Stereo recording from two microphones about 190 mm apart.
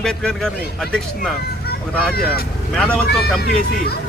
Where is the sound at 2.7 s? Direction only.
5° left (ahead or behind).